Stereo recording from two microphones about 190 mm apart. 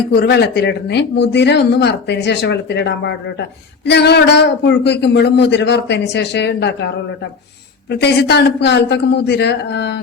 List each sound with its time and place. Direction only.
0.1 s speech: 60° left (ahead or behind)